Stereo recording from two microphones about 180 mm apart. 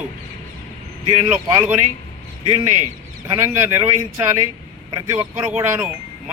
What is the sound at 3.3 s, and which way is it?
Speech, 15° right (ahead or behind).